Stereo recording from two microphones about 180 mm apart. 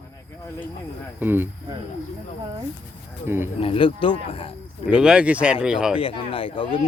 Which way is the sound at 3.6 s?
30° left (ahead or behind).